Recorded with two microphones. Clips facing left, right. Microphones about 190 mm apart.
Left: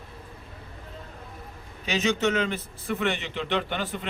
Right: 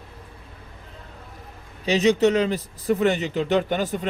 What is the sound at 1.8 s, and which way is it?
A man's voice, 35° right (ahead or behind).